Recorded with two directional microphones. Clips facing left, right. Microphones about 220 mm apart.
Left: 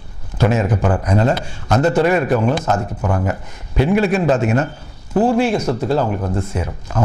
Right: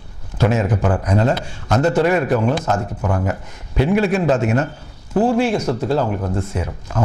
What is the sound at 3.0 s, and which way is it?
A man's voice, 25° left (ahead or behind).